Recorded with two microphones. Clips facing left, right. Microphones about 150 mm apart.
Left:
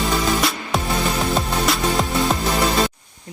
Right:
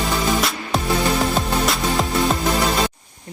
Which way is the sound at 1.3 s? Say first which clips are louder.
Even; centre (ahead or behind).